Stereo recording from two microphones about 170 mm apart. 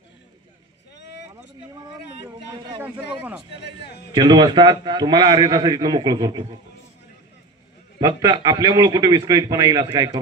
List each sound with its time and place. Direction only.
2.3 s a sound: 25° right (ahead or behind)
3.6 s a man's voice: 75° left (ahead or behind)
4.1 s a man's voice: 25° right (ahead or behind)
8.0 s a man's voice: 20° right (ahead or behind)